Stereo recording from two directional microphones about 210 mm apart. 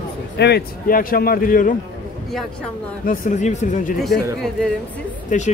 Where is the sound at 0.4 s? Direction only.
50° left (ahead or behind).